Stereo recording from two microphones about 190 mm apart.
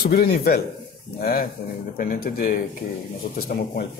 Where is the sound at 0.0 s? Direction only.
50° left (ahead or behind).